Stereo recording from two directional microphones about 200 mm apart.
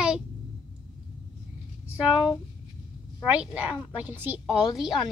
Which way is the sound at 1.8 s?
5° right (ahead or behind).